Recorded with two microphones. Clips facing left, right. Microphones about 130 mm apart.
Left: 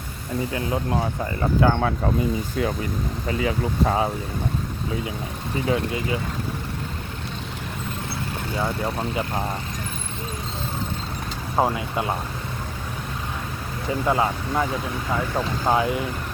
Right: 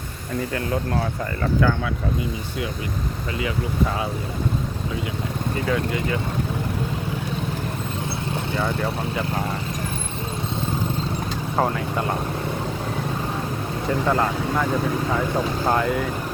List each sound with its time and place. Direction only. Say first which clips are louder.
0.5 s speech: even; 20° left (ahead or behind)
3.2 s speech: left 3 dB; 35° left (ahead or behind)
5.6 s speech: left 1 dB; 25° left (ahead or behind)
8.5 s speech: even; 5° left (ahead or behind)
11.5 s speech: left 1 dB; 15° left (ahead or behind)
14.1 s speech: left 1 dB; 10° left (ahead or behind)